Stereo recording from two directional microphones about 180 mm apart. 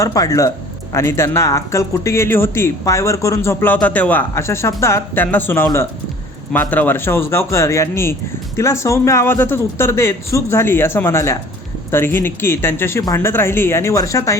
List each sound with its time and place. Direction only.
0.0 s speech: 20° left (ahead or behind)